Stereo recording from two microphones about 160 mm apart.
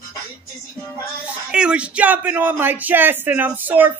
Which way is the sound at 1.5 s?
5° right (ahead or behind).